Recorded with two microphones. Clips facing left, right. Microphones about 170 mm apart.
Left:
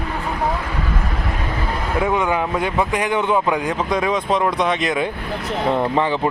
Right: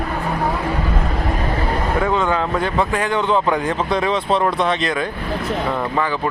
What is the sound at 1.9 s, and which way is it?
Speech, 15° left (ahead or behind).